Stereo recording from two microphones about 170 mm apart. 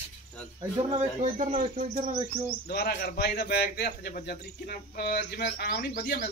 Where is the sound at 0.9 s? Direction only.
45° right (ahead or behind).